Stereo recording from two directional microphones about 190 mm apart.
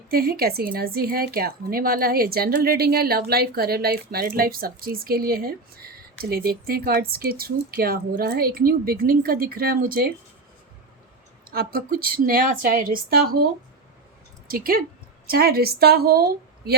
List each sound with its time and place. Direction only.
0.1 s a woman's voice: 50° right (ahead or behind)
11.5 s a woman's voice: 50° right (ahead or behind)